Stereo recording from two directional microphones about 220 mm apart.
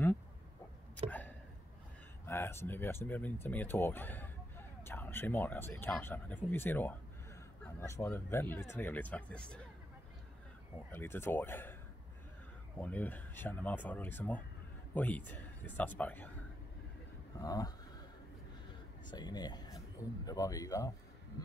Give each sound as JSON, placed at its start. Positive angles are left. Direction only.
{"t": 2.2, "sound": "speech", "side_deg": 10}
{"t": 10.9, "sound": "speech", "side_deg": 10}
{"t": 12.7, "sound": "speech", "side_deg": 5}
{"t": 17.4, "sound": "speech", "side_deg": 15}
{"t": 19.0, "sound": "speech", "side_deg": 20}